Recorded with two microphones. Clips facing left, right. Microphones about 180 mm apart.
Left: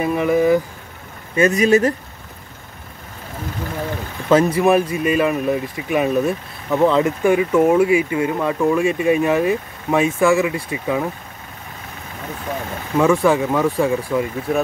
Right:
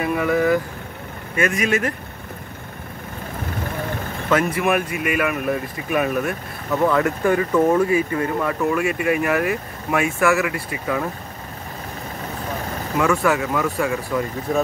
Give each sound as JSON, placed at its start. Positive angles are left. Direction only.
{"t": 0.0, "sound": "speech", "side_deg": 20}
{"t": 1.5, "sound": "speech", "side_deg": 35}
{"t": 4.3, "sound": "speech", "side_deg": 30}
{"t": 8.8, "sound": "speech", "side_deg": 25}
{"t": 13.0, "sound": "speech", "side_deg": 15}
{"t": 13.3, "sound": "speech", "side_deg": 30}